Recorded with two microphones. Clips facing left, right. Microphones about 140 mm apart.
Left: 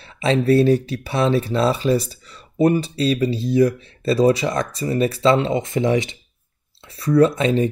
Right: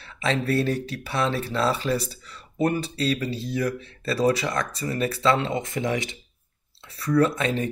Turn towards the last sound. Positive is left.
turn(degrees=20)  # may be behind; listen again after turning